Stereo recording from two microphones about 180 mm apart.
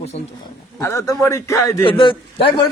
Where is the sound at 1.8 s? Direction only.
30° left (ahead or behind).